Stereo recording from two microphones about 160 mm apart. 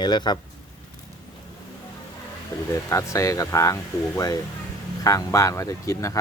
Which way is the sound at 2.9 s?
20° left (ahead or behind).